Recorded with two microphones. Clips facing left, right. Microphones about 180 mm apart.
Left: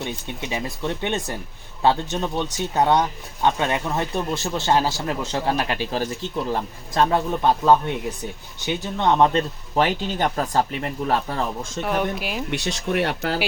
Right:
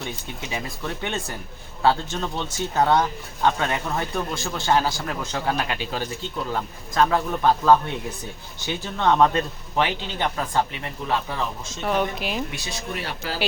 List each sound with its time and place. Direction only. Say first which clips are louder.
0.5 s speech: left 4 dB; 20° left (ahead or behind)
9.7 s speech: left 3 dB; 40° left (ahead or behind)
11.8 s speech: even; 5° left (ahead or behind)
12.5 s speech: left 7 dB; 75° left (ahead or behind)